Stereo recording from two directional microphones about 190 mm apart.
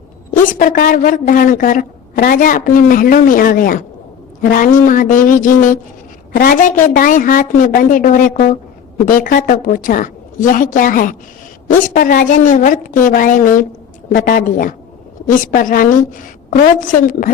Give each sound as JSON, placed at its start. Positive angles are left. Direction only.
{"t": 0.3, "sound": "a woman's voice", "side_deg": 45}